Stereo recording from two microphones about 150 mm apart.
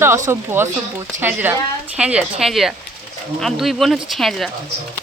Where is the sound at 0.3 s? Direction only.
15° right (ahead or behind); by 4.5 s centre (ahead or behind).